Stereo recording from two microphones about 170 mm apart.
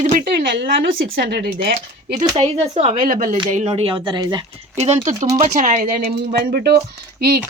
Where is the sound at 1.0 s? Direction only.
65° right (ahead or behind).